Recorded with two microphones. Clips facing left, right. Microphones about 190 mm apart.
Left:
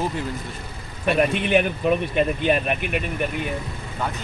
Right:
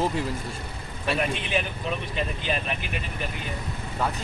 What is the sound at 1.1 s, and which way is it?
Speech, 60° left (ahead or behind).